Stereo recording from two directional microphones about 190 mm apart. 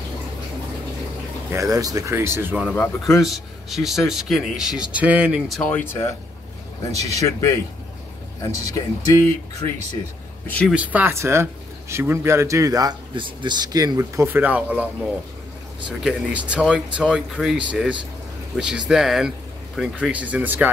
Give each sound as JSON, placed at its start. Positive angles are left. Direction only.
{"t": 1.5, "sound": "speech", "side_deg": -15}
{"t": 2.7, "sound": "speech", "side_deg": 10}
{"t": 3.3, "sound": "speech", "side_deg": 0}
{"t": 7.2, "sound": "speech", "side_deg": 15}
{"t": 10.7, "sound": "speech", "side_deg": -10}
{"t": 16.0, "sound": "speech", "side_deg": -5}